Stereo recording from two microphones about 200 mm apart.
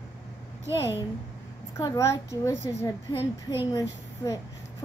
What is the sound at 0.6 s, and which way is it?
Speech, 15° right (ahead or behind).